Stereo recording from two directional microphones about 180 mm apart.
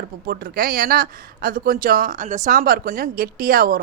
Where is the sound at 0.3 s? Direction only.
55° right (ahead or behind).